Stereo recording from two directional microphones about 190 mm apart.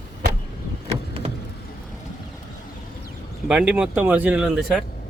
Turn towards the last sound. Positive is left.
turn(degrees=-5)  # may be behind; listen again after turning